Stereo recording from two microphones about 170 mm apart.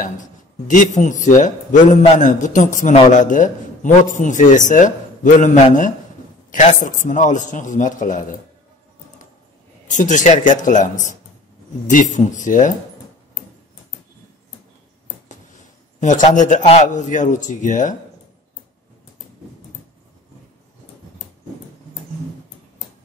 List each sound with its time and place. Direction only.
0.0 s speech: 50° left (ahead or behind)
9.8 s speech: 45° left (ahead or behind)
16.0 s speech: 45° left (ahead or behind)